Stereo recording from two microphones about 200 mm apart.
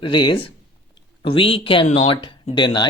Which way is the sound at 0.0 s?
20° left (ahead or behind).